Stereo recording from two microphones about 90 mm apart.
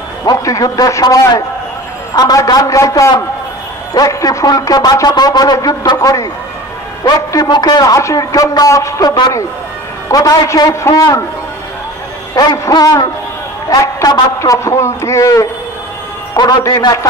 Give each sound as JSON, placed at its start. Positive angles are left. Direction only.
{"t": 0.2, "sound": "a man's voice", "side_deg": 40}
{"t": 5.9, "sound": "a man's voice", "side_deg": 40}
{"t": 10.1, "sound": "a man's voice", "side_deg": 40}
{"t": 13.7, "sound": "a man's voice", "side_deg": 45}
{"t": 16.3, "sound": "a man's voice", "side_deg": 45}